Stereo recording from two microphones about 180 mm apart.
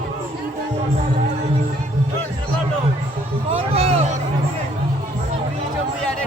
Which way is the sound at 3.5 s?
35° right (ahead or behind).